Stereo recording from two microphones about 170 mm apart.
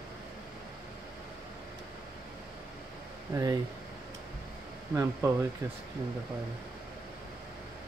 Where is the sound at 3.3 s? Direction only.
20° right (ahead or behind).